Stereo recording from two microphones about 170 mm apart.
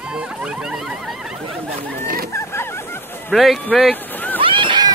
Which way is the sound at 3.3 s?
Centre (ahead or behind).